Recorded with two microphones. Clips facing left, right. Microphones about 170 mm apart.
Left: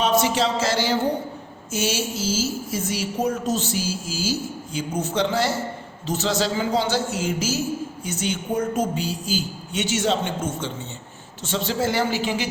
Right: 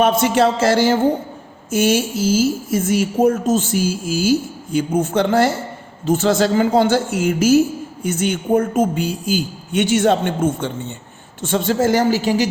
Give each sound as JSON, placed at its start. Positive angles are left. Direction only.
{"t": 0.0, "sound": "a woman's voice", "side_deg": -55}